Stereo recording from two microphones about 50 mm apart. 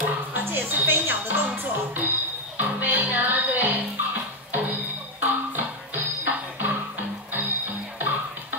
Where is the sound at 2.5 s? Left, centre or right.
Right.